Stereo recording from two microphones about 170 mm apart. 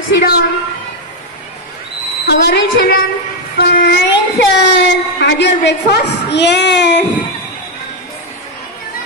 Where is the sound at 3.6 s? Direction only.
70° left (ahead or behind).